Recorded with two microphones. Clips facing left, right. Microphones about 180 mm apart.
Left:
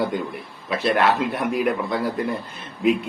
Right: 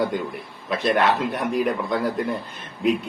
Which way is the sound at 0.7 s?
5° left (ahead or behind).